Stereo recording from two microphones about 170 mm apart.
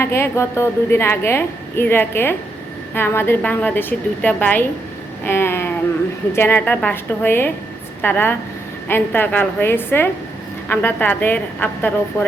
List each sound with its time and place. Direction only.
0.0 s a woman's voice: 15° left (ahead or behind)
5.2 s a sound: 15° left (ahead or behind)
6.3 s a woman's voice: 15° left (ahead or behind)